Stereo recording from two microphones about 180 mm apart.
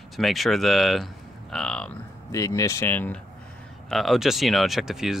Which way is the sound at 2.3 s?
20° left (ahead or behind).